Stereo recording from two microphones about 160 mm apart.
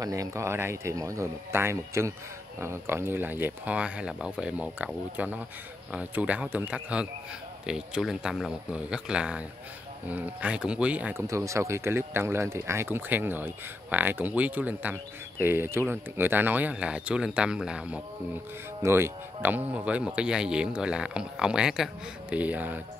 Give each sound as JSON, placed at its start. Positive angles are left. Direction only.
{"t": 0.0, "sound": "speech", "side_deg": -20}
{"t": 18.8, "sound": "speech", "side_deg": -15}